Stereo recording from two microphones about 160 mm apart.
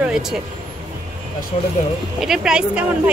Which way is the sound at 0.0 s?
5° right (ahead or behind).